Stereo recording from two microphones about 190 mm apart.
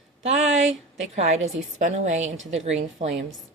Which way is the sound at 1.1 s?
40° right (ahead or behind).